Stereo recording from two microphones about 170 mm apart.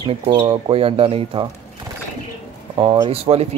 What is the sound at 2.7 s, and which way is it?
Speech, 30° right (ahead or behind).